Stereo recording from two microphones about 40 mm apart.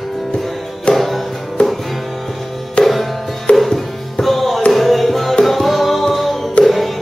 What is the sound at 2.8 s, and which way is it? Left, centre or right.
Music, centre.